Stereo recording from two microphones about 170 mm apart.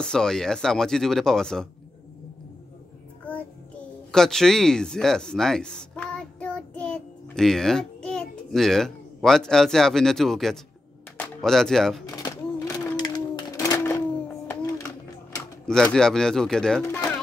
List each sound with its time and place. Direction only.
0.0 s speech: 5° left (ahead or behind)
4.1 s speech: 5° left (ahead or behind)
12.1 s a sound: 20° left (ahead or behind)
15.6 s speech: 5° left (ahead or behind)